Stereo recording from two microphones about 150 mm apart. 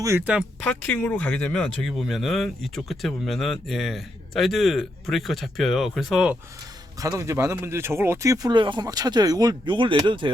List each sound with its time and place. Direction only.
0.0 s speech: 15° right (ahead or behind)
0.6 s speech: 5° left (ahead or behind)
7.0 s speech: 20° right (ahead or behind)